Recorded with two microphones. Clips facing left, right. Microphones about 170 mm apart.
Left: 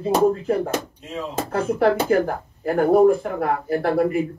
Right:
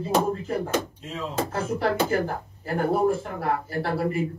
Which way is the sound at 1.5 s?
60° left (ahead or behind).